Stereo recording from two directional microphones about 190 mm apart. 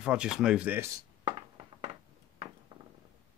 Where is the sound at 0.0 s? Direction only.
5° right (ahead or behind).